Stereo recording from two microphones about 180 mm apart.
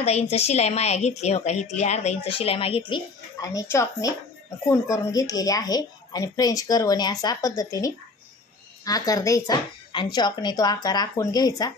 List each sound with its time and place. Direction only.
0.0 s a woman's voice: 35° left (ahead or behind)
2.9 s a woman's voice: 20° left (ahead or behind)